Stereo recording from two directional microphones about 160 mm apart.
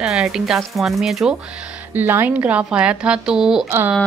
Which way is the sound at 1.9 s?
15° right (ahead or behind).